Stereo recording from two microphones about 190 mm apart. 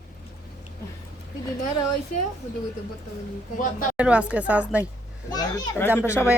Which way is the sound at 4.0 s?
5° right (ahead or behind).